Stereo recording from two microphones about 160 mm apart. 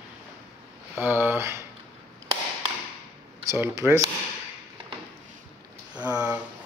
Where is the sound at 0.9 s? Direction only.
10° right (ahead or behind).